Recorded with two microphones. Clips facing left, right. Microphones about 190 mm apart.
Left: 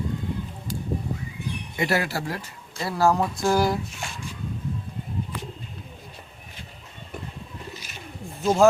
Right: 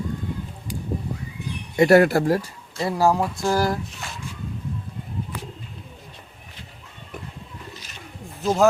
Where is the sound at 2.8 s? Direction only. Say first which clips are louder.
Right 2 dB; 15° right (ahead or behind); by 3.7 s centre (ahead or behind).